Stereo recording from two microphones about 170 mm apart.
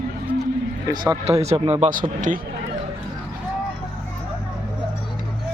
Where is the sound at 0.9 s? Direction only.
25° right (ahead or behind).